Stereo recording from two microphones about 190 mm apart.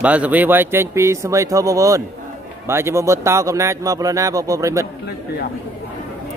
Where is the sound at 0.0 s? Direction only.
5° right (ahead or behind).